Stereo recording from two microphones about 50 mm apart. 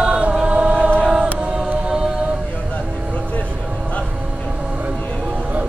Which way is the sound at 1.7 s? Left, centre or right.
Right.